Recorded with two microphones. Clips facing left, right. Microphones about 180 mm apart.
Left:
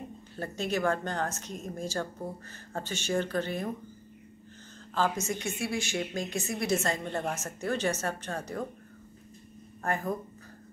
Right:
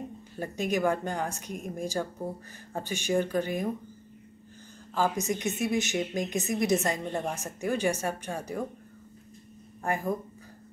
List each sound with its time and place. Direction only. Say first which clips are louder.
0.4 s a woman's voice: right 2 dB; 15° right (ahead or behind)
5.2 s a woman's voice: right 4 dB; 20° right (ahead or behind)
9.8 s a woman's voice: right 2 dB; 15° right (ahead or behind)